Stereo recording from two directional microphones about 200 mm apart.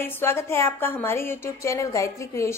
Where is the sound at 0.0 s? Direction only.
10° left (ahead or behind).